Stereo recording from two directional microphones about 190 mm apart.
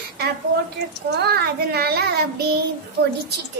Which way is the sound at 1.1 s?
60° right (ahead or behind).